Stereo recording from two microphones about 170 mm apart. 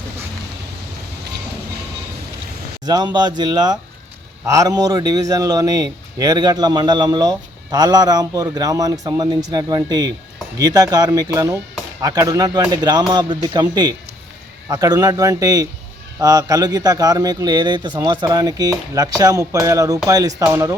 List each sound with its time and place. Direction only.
2.8 s speech: 25° right (ahead or behind)